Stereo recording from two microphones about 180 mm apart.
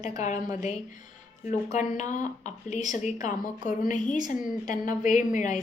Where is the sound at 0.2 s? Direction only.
40° left (ahead or behind).